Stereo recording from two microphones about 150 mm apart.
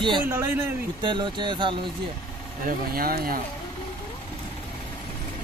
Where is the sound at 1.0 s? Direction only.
30° right (ahead or behind).